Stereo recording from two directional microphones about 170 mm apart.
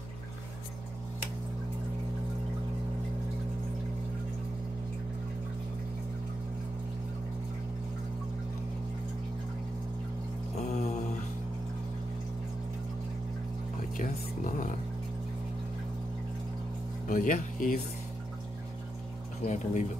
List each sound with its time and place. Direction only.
10.5 s music: 45° left (ahead or behind)
13.9 s a sound: 50° left (ahead or behind)
17.1 s speech: 50° left (ahead or behind)
19.4 s speech: 45° left (ahead or behind)